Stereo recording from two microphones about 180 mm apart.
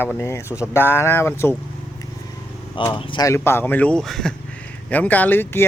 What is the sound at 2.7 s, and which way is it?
Speech, 25° left (ahead or behind).